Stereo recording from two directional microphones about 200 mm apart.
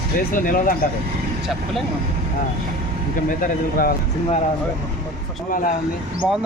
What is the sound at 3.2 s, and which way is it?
Speech, 45° left (ahead or behind).